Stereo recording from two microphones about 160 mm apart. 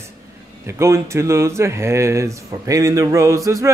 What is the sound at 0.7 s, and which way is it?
Speech, 15° right (ahead or behind).